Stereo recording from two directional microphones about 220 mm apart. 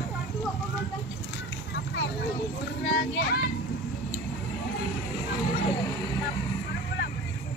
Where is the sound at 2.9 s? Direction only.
55° left (ahead or behind).